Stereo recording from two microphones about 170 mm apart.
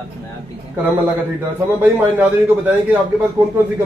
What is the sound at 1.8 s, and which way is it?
A man's voice, 10° right (ahead or behind).